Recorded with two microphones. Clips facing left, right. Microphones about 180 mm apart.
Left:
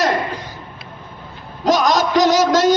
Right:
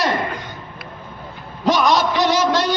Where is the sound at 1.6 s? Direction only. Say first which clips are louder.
Left 1 dB; 40° left (ahead or behind).